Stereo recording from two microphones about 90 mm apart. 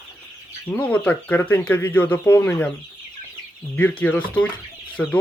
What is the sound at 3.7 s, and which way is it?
Speech, 15° left (ahead or behind).